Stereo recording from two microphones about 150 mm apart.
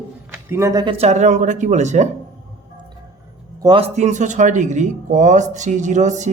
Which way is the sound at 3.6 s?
40° right (ahead or behind).